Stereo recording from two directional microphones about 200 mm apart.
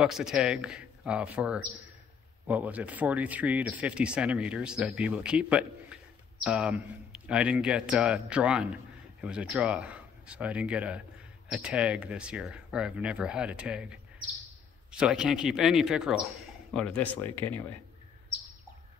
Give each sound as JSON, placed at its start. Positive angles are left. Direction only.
{"t": 0.0, "sound": "speech", "side_deg": -5}